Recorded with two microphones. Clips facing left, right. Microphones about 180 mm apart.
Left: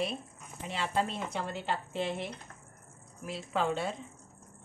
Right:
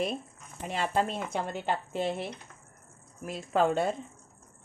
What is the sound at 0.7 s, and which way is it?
Speech, 50° right (ahead or behind).